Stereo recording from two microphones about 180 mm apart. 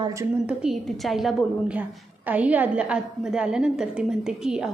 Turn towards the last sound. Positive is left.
turn(degrees=-5)  # may be behind; listen again after turning